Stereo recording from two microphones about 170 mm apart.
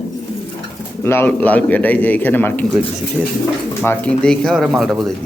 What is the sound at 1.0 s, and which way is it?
A man's voice, 15° left (ahead or behind).